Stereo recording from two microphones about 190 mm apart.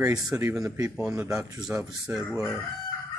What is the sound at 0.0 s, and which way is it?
Speech, 20° right (ahead or behind).